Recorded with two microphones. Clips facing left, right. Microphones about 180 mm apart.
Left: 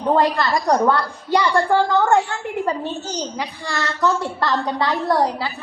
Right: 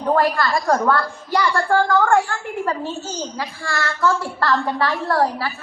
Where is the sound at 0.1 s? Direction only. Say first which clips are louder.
Left 1 dB; 20° left (ahead or behind).